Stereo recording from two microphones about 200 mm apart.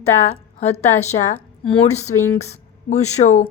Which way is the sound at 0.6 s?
35° left (ahead or behind).